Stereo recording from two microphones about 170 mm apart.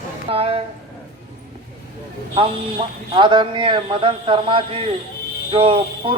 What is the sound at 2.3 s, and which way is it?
A man's voice, 30° right (ahead or behind).